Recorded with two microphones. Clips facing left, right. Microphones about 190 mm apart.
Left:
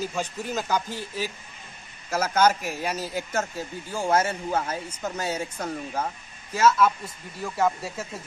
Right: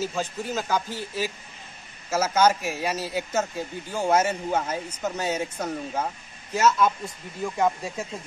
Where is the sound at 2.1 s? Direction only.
10° right (ahead or behind).